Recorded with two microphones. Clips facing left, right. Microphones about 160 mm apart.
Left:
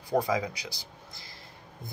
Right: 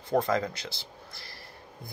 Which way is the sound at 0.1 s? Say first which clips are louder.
Right 1 dB; 10° left (ahead or behind).